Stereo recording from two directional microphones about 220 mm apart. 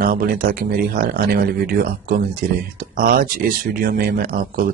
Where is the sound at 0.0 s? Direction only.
40° right (ahead or behind).